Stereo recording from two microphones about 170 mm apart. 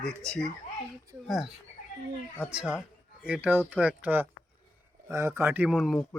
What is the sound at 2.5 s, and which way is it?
A man's voice, 5° right (ahead or behind).